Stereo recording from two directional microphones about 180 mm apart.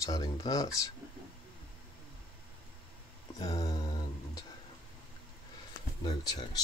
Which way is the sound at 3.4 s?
20° left (ahead or behind).